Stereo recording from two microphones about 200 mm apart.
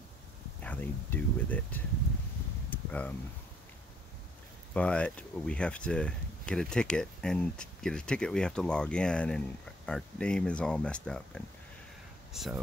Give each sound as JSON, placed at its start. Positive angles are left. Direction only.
{"t": 0.6, "sound": "speech", "side_deg": 10}
{"t": 2.7, "sound": "a sound", "side_deg": 5}
{"t": 4.7, "sound": "speech", "side_deg": 5}